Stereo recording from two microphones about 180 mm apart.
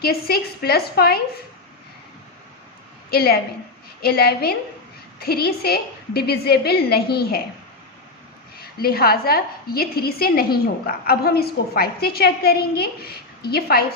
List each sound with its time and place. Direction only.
0.0 s a woman's voice: 60° left (ahead or behind)
3.1 s a woman's voice: 60° left (ahead or behind)
8.6 s a woman's voice: 55° left (ahead or behind)